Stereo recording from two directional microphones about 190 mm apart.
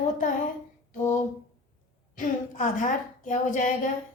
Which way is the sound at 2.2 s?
45° left (ahead or behind).